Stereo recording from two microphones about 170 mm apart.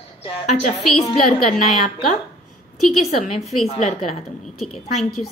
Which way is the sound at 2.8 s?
Centre (ahead or behind).